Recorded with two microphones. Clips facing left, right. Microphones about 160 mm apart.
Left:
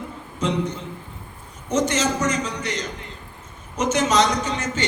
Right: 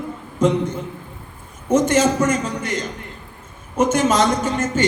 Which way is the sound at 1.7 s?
50° right (ahead or behind).